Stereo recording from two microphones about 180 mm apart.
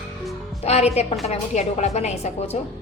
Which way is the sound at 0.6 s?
35° left (ahead or behind).